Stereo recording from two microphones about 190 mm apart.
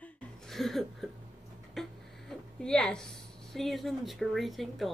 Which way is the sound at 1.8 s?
5° left (ahead or behind).